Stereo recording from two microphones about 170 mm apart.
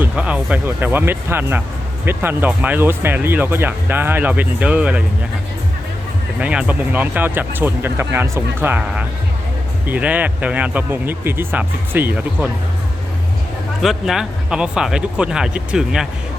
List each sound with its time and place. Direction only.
0.0 s speech: 5° right (ahead or behind)
6.4 s speech: 5° right (ahead or behind)
13.8 s speech: centre (ahead or behind)